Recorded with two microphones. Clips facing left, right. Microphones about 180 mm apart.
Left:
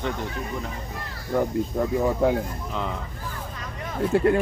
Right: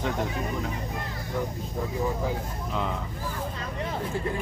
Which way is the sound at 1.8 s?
70° left (ahead or behind).